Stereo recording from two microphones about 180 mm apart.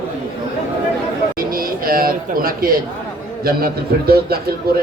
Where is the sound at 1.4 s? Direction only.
55° right (ahead or behind).